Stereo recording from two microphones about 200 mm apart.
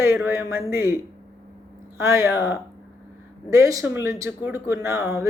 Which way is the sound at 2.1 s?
15° right (ahead or behind).